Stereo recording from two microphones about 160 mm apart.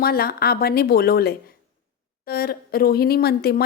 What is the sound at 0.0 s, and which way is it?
A woman's voice, 70° left (ahead or behind).